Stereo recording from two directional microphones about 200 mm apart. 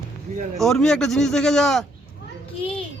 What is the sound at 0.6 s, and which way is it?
A man's voice, centre (ahead or behind).